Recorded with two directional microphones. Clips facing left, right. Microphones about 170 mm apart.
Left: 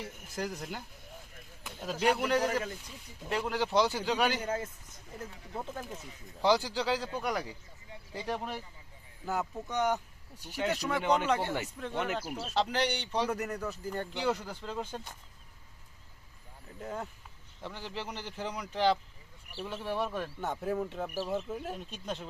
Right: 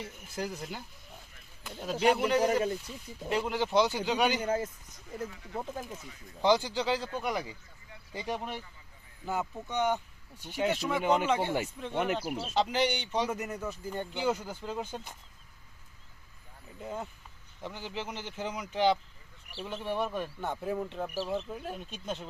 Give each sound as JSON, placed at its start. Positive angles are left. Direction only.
{"t": 0.3, "sound": "speech", "side_deg": -5}
{"t": 2.0, "sound": "speech", "side_deg": -5}
{"t": 2.5, "sound": "speech", "side_deg": -25}
{"t": 3.2, "sound": "speech", "side_deg": -5}
{"t": 4.4, "sound": "speech", "side_deg": -30}
{"t": 5.5, "sound": "speech", "side_deg": -10}
{"t": 6.4, "sound": "speech", "side_deg": 5}
{"t": 10.4, "sound": "speech", "side_deg": -20}
{"t": 12.1, "sound": "speech", "side_deg": 0}
{"t": 16.8, "sound": "speech", "side_deg": -5}